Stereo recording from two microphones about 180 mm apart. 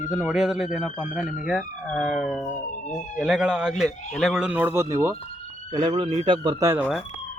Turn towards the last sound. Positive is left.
turn(degrees=-10)  # may be behind; listen again after turning